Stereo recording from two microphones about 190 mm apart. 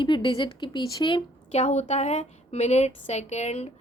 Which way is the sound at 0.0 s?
25° left (ahead or behind).